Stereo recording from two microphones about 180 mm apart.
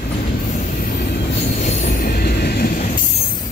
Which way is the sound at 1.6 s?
40° left (ahead or behind).